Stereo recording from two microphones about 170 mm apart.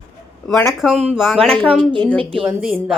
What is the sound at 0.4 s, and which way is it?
Speech, centre (ahead or behind).